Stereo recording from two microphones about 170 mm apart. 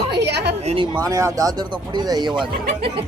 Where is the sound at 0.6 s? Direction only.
40° right (ahead or behind).